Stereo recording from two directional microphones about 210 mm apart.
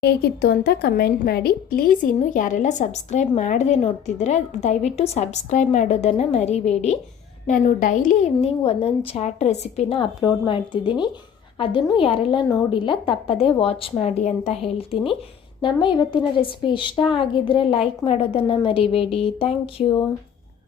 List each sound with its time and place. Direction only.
0.0 s a woman's voice: 50° left (ahead or behind); by 20.0 s 25° left (ahead or behind)